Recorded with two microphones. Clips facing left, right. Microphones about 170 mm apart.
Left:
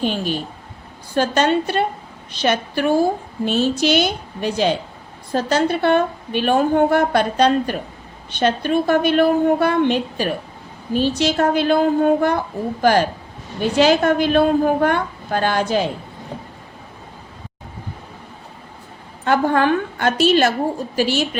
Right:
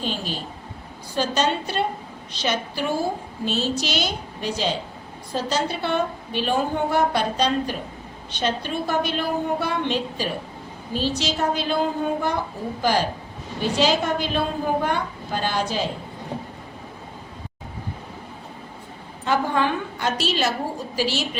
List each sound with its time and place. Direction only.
0.0 s a woman's voice: 60° left (ahead or behind)
19.2 s a woman's voice: 55° left (ahead or behind)